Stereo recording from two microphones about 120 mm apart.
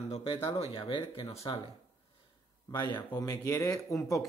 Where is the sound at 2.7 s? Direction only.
35° left (ahead or behind).